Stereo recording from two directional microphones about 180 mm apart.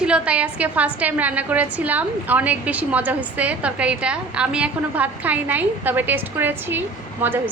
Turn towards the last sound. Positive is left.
turn(degrees=-10)  # may be behind; listen again after turning